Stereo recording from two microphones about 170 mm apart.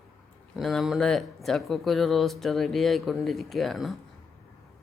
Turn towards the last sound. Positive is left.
turn(degrees=0)  # may be behind; listen again after turning